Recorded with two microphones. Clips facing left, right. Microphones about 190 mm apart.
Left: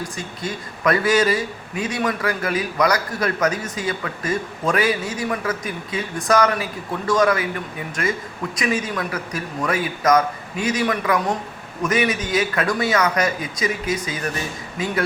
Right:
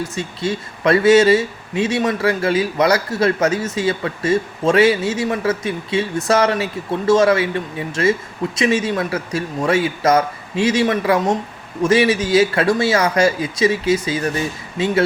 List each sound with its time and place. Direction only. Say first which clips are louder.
0.2 s speech: right 6 dB; 25° right (ahead or behind)